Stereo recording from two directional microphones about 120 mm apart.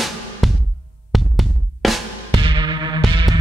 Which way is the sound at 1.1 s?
Centre (ahead or behind).